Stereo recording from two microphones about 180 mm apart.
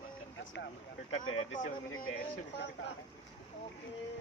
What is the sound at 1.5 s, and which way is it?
Speech, 50° left (ahead or behind).